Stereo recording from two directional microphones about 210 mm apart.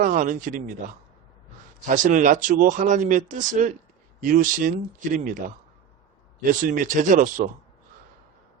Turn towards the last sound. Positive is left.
turn(degrees=-40)  # may be behind; listen again after turning